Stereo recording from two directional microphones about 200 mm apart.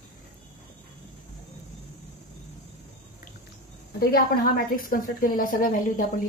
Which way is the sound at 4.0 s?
50° left (ahead or behind).